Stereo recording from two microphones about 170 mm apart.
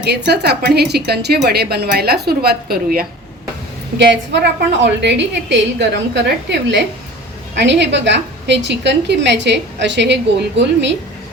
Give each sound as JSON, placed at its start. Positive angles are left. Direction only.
{"t": 0.0, "sound": "a woman's voice", "side_deg": -70}
{"t": 3.9, "sound": "a woman's voice", "side_deg": -90}